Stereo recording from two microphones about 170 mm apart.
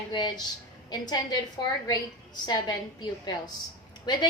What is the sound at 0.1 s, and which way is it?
A woman's voice, 25° left (ahead or behind).